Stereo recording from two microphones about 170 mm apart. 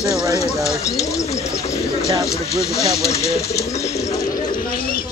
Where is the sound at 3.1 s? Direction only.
40° left (ahead or behind).